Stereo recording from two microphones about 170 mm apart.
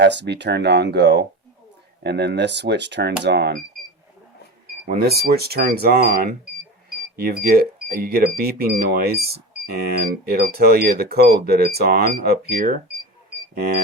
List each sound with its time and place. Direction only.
0.0 s speech: 90° right
4.9 s speech: 65° right (ahead or behind)